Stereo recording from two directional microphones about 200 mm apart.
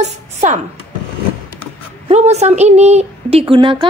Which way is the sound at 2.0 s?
35° right (ahead or behind).